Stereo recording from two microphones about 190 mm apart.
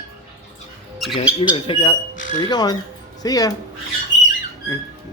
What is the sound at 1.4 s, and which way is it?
Bird, 30° left (ahead or behind).